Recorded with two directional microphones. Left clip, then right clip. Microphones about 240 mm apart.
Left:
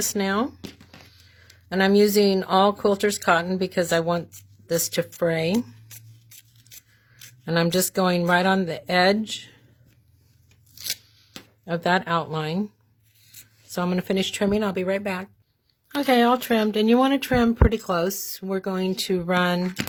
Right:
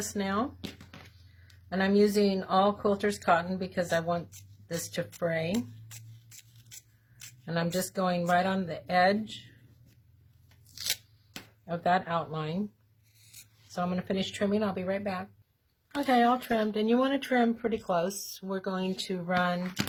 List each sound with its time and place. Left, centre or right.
0.1 s speech: left
0.6 s a sound: centre
1.7 s speech: left
7.4 s speech: left
11.6 s speech: left
13.7 s speech: left